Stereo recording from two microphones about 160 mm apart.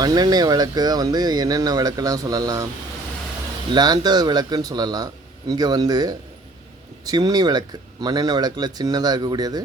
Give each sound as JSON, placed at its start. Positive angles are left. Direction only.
{"t": 0.0, "sound": "speech", "side_deg": -25}
{"t": 3.7, "sound": "speech", "side_deg": -25}